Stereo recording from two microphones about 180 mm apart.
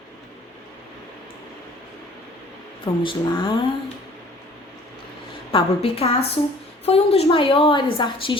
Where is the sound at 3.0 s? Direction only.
25° left (ahead or behind).